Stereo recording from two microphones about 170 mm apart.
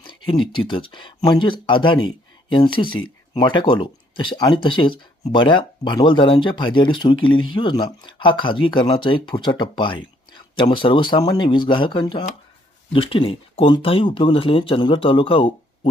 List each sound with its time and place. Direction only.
0.0 s speech: 30° left (ahead or behind)